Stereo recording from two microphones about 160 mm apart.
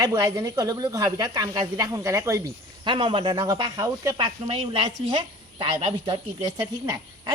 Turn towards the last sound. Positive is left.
turn(degrees=-25)  # may be behind; listen again after turning